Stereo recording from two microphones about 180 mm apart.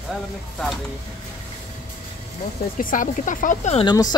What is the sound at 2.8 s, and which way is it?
Speech, 45° left (ahead or behind).